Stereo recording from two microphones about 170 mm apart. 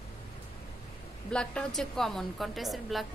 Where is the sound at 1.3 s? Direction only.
5° left (ahead or behind).